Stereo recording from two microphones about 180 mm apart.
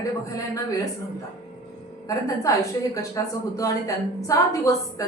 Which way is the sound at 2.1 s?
20° left (ahead or behind).